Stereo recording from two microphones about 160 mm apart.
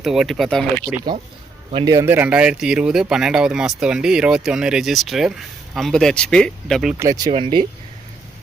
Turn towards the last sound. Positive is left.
turn(degrees=-30)  # may be behind; listen again after turning